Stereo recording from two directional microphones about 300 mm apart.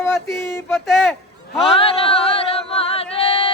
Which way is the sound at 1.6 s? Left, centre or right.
Centre.